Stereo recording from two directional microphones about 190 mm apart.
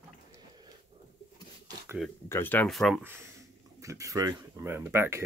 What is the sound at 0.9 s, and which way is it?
Rub, 30° right (ahead or behind).